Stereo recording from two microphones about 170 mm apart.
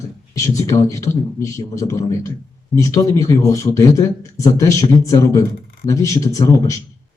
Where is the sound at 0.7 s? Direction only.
20° left (ahead or behind).